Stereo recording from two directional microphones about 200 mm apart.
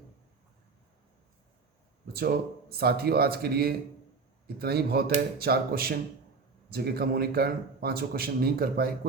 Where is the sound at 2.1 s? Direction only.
50° right (ahead or behind).